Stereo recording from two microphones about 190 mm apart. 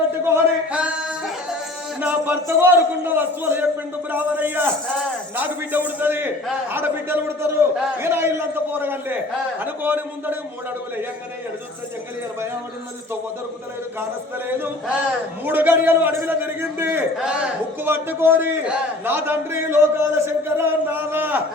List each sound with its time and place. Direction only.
0.3 s a man's voice: 10° right (ahead or behind)
14.4 s a man's voice: 10° right (ahead or behind)